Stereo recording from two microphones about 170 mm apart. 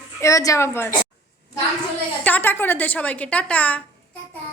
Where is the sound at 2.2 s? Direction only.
10° left (ahead or behind).